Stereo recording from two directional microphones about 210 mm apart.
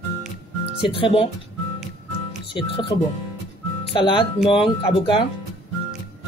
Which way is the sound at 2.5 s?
20° left (ahead or behind).